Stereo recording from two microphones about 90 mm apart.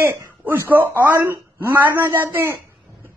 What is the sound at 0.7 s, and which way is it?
A man's voice, 20° right (ahead or behind).